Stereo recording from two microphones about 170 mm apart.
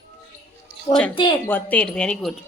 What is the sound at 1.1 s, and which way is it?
Speech, 30° left (ahead or behind).